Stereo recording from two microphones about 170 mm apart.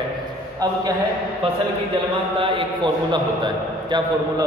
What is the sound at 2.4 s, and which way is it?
A man's voice, 30° right (ahead or behind).